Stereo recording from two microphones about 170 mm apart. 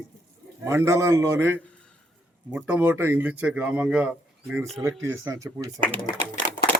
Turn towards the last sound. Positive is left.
turn(degrees=-35)  # may be behind; listen again after turning